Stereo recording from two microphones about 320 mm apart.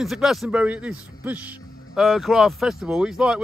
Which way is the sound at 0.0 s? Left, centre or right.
Centre.